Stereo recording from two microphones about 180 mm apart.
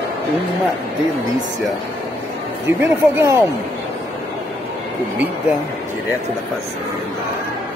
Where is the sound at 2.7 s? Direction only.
15° right (ahead or behind).